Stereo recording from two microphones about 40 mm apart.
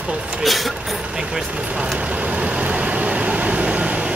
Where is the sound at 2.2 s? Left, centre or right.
Right.